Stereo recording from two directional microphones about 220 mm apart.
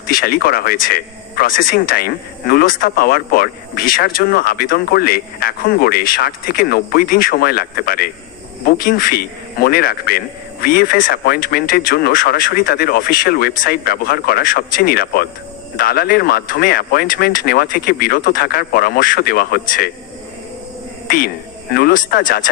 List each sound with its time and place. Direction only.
0.1 s speech: 40° left (ahead or behind)
21.7 s speech: 45° left (ahead or behind)